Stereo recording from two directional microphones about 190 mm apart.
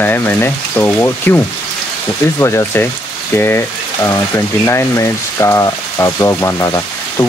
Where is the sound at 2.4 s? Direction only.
15° left (ahead or behind).